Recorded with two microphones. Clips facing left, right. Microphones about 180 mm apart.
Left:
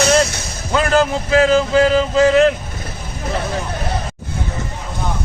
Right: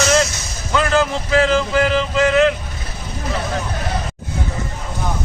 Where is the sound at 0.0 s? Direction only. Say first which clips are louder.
Left 2 dB; 30° left (ahead or behind).